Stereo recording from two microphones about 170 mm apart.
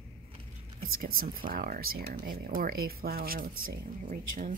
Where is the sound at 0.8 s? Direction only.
55° right (ahead or behind).